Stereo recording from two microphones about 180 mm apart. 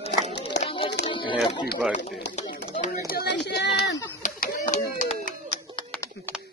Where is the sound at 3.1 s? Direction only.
65° left (ahead or behind).